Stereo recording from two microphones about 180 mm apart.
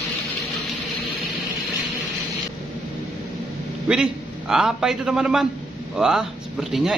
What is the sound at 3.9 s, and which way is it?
A man's voice, 5° right (ahead or behind).